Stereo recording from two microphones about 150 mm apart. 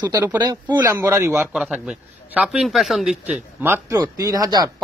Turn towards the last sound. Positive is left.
turn(degrees=-25)  # may be behind; listen again after turning